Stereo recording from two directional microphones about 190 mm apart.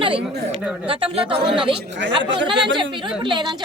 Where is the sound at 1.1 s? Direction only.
30° right (ahead or behind).